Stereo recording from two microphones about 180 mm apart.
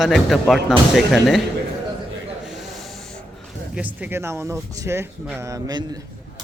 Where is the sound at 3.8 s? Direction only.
10° right (ahead or behind).